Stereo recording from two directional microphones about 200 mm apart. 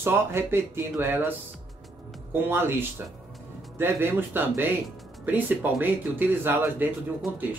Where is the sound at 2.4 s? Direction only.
10° right (ahead or behind).